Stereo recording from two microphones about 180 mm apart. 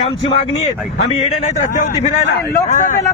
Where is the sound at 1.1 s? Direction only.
30° left (ahead or behind).